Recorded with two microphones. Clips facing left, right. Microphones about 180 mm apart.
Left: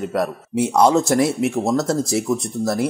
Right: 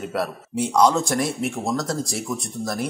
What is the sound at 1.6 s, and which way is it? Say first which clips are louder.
Speech: left 5 dB; 25° left (ahead or behind).